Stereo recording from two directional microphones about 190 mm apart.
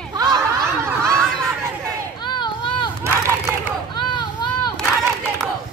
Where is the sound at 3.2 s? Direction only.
15° right (ahead or behind).